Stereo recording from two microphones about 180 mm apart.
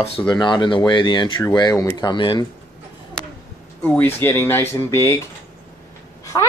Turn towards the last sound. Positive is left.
turn(degrees=20)  # may be behind; listen again after turning